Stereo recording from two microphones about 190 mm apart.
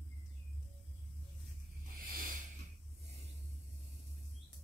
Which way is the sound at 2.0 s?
50° right (ahead or behind).